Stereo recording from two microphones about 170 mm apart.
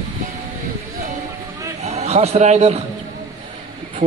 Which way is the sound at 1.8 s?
40° right (ahead or behind).